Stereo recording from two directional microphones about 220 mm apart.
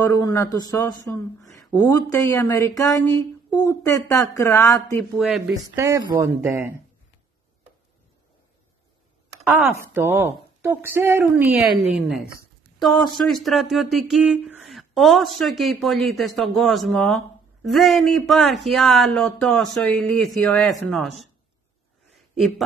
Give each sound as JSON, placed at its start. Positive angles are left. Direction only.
{"t": 0.1, "sound": "speech", "side_deg": 15}
{"t": 5.1, "sound": "speech", "side_deg": 0}
{"t": 5.8, "sound": "a woman's voice", "side_deg": -15}
{"t": 9.7, "sound": "a woman's voice", "side_deg": -10}
{"t": 12.7, "sound": "a sound", "side_deg": 0}
{"t": 13.1, "sound": "speech", "side_deg": 0}
{"t": 22.1, "sound": "a sound", "side_deg": 0}